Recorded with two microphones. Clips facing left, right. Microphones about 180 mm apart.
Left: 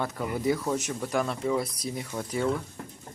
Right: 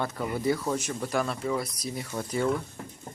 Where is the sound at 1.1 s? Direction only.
15° left (ahead or behind).